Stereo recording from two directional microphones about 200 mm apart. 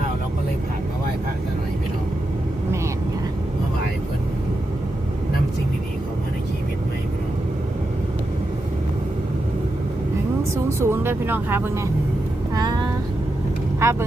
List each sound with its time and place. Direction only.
10.7 s speech: 15° right (ahead or behind)
12.5 s vehicle: 20° right (ahead or behind)
13.8 s speech: 15° right (ahead or behind)